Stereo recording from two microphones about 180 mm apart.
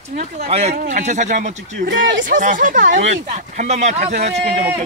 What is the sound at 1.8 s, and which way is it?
Speech, 90° right.